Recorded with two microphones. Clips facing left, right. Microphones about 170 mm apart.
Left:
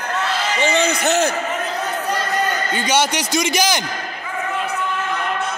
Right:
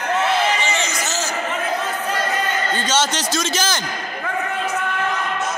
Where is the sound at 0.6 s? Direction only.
60° left (ahead or behind).